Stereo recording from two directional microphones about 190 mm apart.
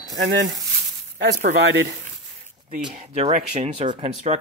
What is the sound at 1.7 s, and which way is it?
Speech, 70° right (ahead or behind).